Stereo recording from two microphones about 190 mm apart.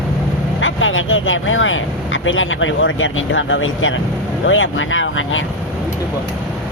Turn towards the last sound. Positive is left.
turn(degrees=90)